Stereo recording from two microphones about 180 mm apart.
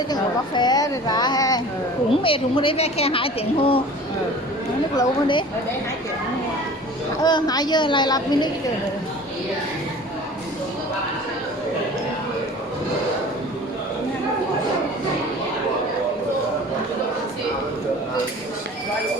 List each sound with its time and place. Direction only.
0.1 s a woman's voice: 25° left (ahead or behind)
4.9 s a woman's voice: 25° left (ahead or behind)
7.2 s a woman's voice: 25° left (ahead or behind)